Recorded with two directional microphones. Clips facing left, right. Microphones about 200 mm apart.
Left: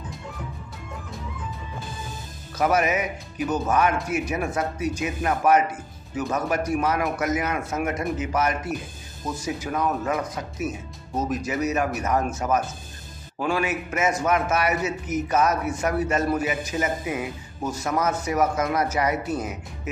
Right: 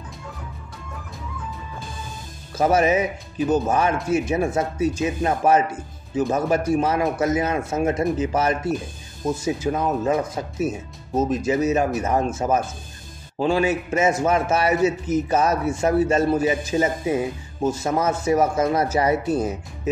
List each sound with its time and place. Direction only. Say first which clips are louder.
2.5 s a man's voice: right 4 dB; 30° right (ahead or behind)